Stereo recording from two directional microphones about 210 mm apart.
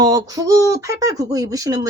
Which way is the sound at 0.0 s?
15° right (ahead or behind).